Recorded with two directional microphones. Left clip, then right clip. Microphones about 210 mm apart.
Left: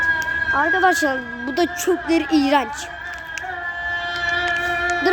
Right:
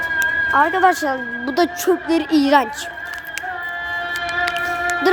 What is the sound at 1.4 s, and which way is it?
Speech, 10° right (ahead or behind).